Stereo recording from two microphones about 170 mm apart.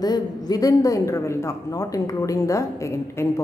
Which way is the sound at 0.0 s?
20° left (ahead or behind).